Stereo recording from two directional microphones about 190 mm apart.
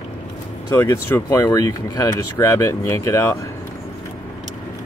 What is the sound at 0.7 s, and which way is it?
Speech, 15° left (ahead or behind).